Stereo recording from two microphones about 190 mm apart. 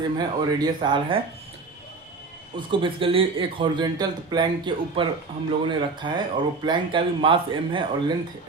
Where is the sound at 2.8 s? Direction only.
25° right (ahead or behind).